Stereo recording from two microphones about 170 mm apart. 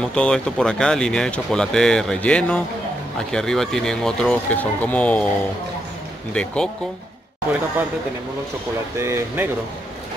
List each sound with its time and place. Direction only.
0.1 s speech: 5° left (ahead or behind)
6.3 s speech: 5° left (ahead or behind)
8.9 s speech: 15° right (ahead or behind)